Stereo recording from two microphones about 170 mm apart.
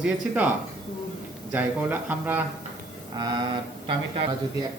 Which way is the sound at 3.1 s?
25° right (ahead or behind).